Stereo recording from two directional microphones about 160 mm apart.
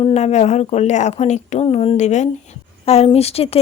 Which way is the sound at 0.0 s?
45° left (ahead or behind).